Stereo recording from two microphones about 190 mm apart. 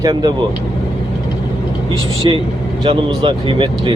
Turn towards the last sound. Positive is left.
turn(degrees=-25)  # may be behind; listen again after turning